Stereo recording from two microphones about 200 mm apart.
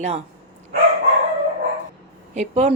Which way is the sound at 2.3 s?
35° right (ahead or behind).